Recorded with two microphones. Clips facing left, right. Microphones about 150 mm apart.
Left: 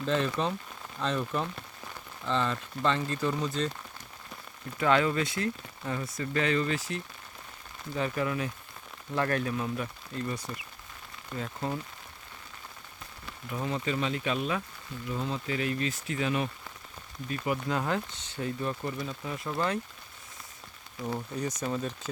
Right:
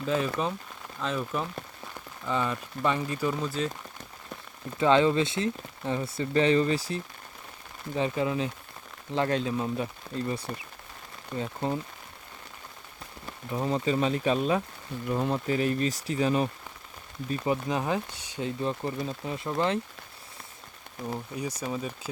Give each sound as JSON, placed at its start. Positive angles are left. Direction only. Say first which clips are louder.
{"t": 0.0, "sound": "speech", "louder": "right 1 dB", "side_deg": -5}
{"t": 4.8, "sound": "speech", "louder": "right 4 dB", "side_deg": -25}
{"t": 7.9, "sound": "speech", "louder": "right 3 dB", "side_deg": -20}
{"t": 13.5, "sound": "speech", "louder": "right 5 dB", "side_deg": -30}
{"t": 15.0, "sound": "speech", "louder": "right 6 dB", "side_deg": -55}
{"t": 15.4, "sound": "speech", "louder": "right 5 dB", "side_deg": -40}
{"t": 17.3, "sound": "speech", "louder": "right 2 dB", "side_deg": -25}
{"t": 21.1, "sound": "speech", "louder": "left 1 dB", "side_deg": -10}